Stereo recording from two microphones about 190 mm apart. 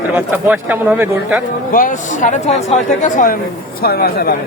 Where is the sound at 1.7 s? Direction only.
45° left (ahead or behind).